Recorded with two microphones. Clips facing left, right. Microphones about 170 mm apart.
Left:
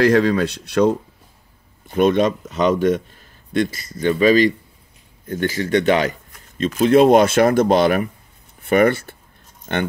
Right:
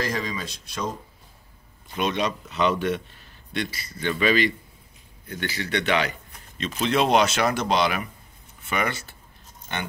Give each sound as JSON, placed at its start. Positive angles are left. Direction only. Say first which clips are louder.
{"t": 0.0, "sound": "speech", "louder": "left 14 dB", "side_deg": 70}
{"t": 2.0, "sound": "speech", "louder": "left 10 dB", "side_deg": 50}